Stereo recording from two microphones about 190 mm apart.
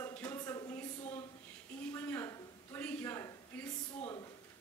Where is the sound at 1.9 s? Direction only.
10° left (ahead or behind).